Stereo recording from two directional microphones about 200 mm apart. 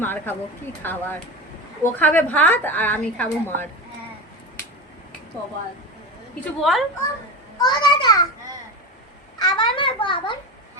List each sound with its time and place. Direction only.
0.0 s a woman's voice: 10° left (ahead or behind)
6.4 s a woman's voice: centre (ahead or behind)
7.6 s a child's voice: 20° left (ahead or behind)
9.4 s a sound: 20° left (ahead or behind)